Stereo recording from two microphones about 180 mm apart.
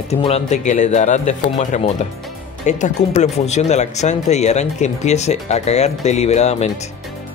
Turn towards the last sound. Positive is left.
turn(degrees=35)  # may be behind; listen again after turning